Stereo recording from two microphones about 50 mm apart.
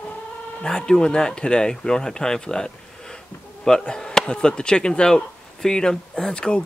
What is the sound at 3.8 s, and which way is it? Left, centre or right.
Speech, centre.